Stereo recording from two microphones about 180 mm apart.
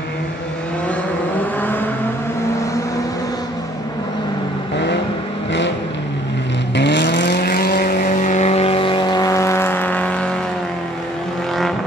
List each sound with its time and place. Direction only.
6.7 s vehicle: 75° left (ahead or behind); by 10.3 s 5° left (ahead or behind)